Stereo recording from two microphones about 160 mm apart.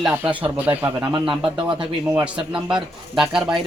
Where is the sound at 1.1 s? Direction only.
30° right (ahead or behind).